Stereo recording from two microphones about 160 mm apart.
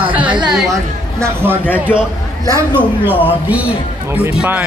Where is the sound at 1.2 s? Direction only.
15° right (ahead or behind).